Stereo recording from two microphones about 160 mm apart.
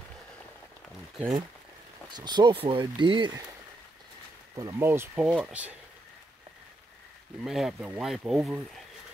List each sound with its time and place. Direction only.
2.0 s speech: 25° right (ahead or behind)
4.6 s speech: 20° right (ahead or behind)
7.4 s speech: centre (ahead or behind)